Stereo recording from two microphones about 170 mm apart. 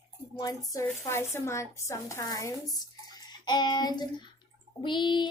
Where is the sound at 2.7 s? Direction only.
25° left (ahead or behind).